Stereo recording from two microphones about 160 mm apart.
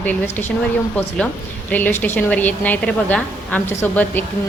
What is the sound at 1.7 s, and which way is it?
A woman's voice, 10° left (ahead or behind).